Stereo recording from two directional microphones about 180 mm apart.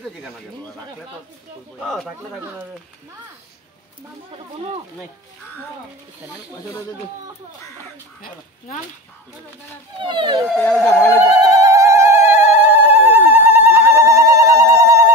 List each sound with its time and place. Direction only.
1.8 s speech: 5° left (ahead or behind)
10.0 s speech: 25° right (ahead or behind)
10.5 s speech: 5° left (ahead or behind)
11.6 s telephone bell ringing: 15° right (ahead or behind)